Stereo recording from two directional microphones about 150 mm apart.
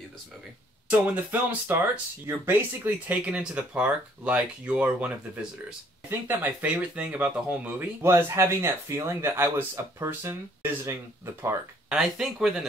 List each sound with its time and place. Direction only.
0.8 s speech: 10° right (ahead or behind)
11.9 s speech: 5° right (ahead or behind)